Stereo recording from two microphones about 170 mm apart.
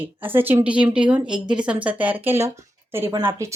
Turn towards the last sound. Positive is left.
turn(degrees=-15)  # may be behind; listen again after turning